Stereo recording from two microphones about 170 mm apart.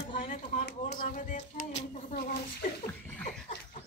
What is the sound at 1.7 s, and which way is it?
Speech, 40° left (ahead or behind).